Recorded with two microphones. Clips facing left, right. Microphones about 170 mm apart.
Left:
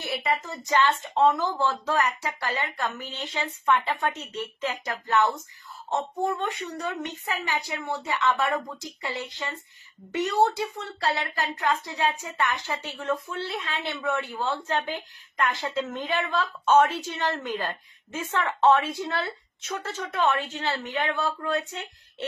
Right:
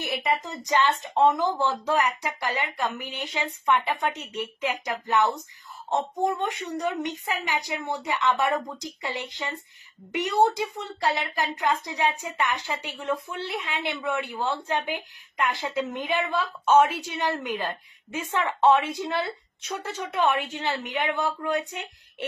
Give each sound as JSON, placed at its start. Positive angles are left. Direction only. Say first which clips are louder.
{"t": 0.0, "sound": "speech", "louder": "right 1 dB", "side_deg": -15}